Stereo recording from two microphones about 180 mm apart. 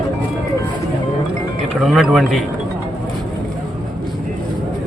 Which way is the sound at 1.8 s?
Centre (ahead or behind).